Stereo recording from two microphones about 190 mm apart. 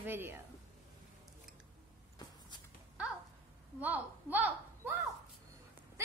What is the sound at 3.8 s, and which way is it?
A woman's voice, 10° right (ahead or behind).